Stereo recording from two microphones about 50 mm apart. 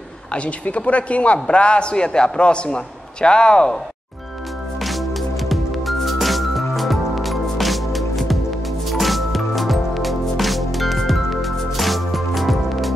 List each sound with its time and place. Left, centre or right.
0.3 s a man's voice: left
5.5 s music: centre